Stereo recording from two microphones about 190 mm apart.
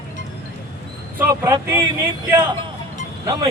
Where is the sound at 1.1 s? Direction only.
10° right (ahead or behind).